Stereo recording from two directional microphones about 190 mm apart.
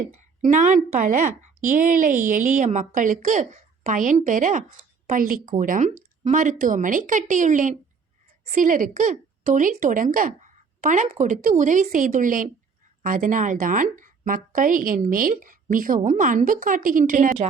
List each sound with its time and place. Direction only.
0.1 s a woman's voice: 40° right (ahead or behind)